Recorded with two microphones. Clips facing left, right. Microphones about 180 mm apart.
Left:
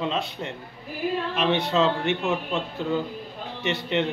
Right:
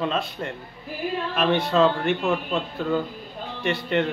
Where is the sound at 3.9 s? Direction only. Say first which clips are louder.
Right 2 dB; 50° right (ahead or behind).